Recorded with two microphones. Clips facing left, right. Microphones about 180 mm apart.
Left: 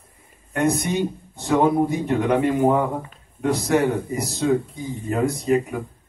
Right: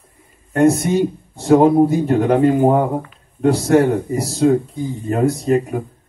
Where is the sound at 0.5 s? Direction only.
35° right (ahead or behind).